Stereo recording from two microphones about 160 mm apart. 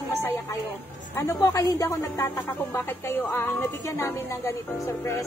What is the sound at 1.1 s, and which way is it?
A woman's voice, 15° left (ahead or behind).